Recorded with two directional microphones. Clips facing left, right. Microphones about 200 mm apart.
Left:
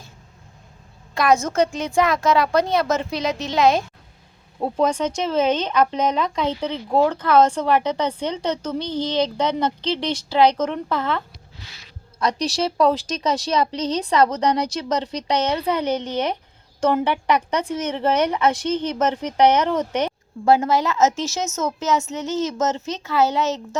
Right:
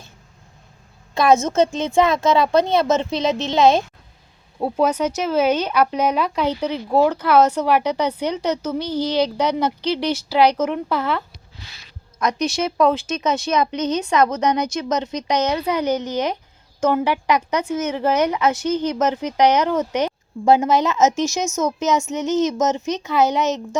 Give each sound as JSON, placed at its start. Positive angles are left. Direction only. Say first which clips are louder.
{"t": 1.1, "sound": "a woman's voice", "louder": "right 3 dB", "side_deg": -25}
{"t": 4.6, "sound": "a woman's voice", "louder": "right 1 dB", "side_deg": -5}
{"t": 12.4, "sound": "speech", "louder": "right 1 dB", "side_deg": 35}
{"t": 15.4, "sound": "a woman's voice", "louder": "right 1 dB", "side_deg": -10}